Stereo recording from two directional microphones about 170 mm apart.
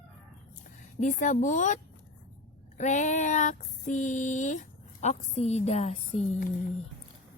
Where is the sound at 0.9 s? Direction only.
45° left (ahead or behind).